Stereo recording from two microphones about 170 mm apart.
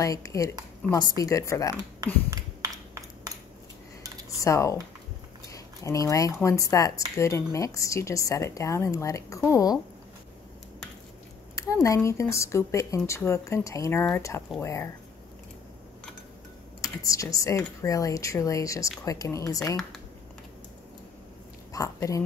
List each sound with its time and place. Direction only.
0.0 s speech: 20° left (ahead or behind)
2.3 s a sound: 20° right (ahead or behind)
4.4 s speech: 20° left (ahead or behind)
11.5 s speech: 20° left (ahead or behind)
16.8 s speech: 20° left (ahead or behind)
21.7 s a woman's voice: 20° left (ahead or behind)